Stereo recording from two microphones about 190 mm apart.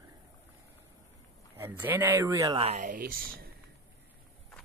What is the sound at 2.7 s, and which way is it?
Speech, 45° right (ahead or behind).